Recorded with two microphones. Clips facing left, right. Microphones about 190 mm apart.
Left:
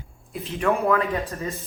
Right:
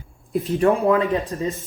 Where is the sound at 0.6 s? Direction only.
20° right (ahead or behind).